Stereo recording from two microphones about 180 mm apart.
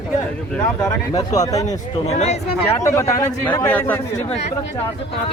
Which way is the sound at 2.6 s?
15° left (ahead or behind).